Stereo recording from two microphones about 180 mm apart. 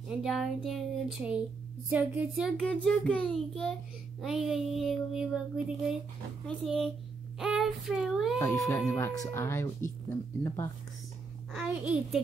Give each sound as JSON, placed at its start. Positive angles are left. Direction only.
{"t": 0.1, "sound": "child singing", "side_deg": 0}
{"t": 6.4, "sound": "child singing", "side_deg": 0}
{"t": 8.4, "sound": "speech", "side_deg": 15}
{"t": 11.5, "sound": "child singing", "side_deg": -5}